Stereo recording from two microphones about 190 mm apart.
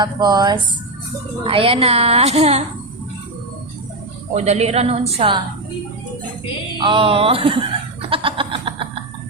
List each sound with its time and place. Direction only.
0.0 s a woman's voice: 20° right (ahead or behind)
4.4 s a woman's voice: 35° right (ahead or behind)
6.8 s speech: 25° right (ahead or behind)
8.1 s a sound: 25° right (ahead or behind)